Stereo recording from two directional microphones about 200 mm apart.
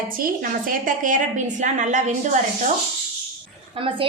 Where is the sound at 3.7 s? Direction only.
25° right (ahead or behind).